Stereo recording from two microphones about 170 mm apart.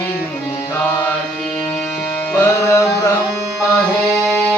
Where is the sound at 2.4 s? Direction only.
15° left (ahead or behind).